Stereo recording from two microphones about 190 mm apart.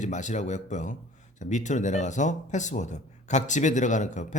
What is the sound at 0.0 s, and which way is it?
Speech, 40° left (ahead or behind).